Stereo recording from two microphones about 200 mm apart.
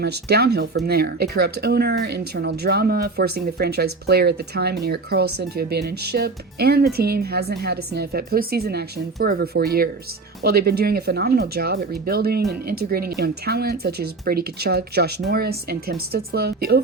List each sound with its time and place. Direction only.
0.0 s speech: 55° right (ahead or behind)